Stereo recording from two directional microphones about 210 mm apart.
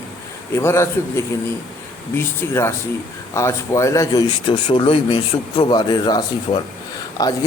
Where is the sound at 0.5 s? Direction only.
10° left (ahead or behind).